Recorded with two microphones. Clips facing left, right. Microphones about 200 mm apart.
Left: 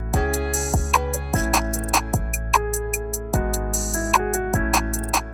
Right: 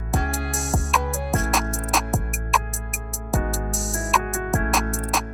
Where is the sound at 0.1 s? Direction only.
Centre (ahead or behind).